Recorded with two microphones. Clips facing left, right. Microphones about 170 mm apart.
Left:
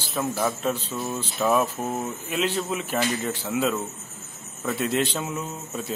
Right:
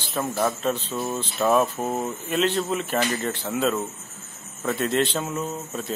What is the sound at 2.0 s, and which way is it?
Speech, 10° left (ahead or behind).